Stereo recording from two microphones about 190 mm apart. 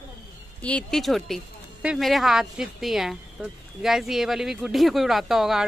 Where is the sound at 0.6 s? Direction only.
5° left (ahead or behind).